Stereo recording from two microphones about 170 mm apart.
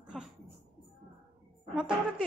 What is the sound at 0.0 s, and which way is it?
Music, centre (ahead or behind).